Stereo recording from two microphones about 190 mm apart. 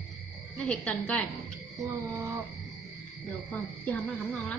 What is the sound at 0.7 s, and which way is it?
Speech, 5° left (ahead or behind).